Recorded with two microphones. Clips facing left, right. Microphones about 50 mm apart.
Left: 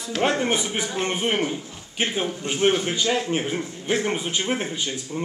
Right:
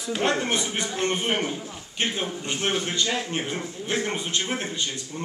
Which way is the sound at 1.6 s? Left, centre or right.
Centre.